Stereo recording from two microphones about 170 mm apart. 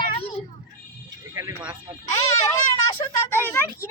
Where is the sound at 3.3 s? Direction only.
10° left (ahead or behind).